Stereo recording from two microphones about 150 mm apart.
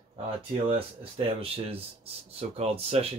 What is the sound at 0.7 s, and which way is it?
Speech, 40° right (ahead or behind).